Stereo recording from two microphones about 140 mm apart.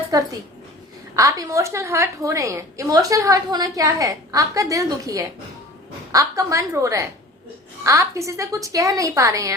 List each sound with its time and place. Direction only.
0.1 s a woman's voice: 25° right (ahead or behind)